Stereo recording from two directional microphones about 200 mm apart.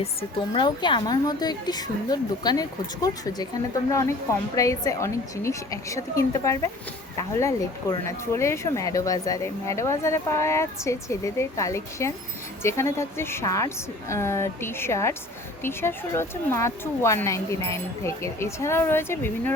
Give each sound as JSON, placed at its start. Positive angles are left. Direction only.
{"t": 0.0, "sound": "a woman's voice", "side_deg": 25}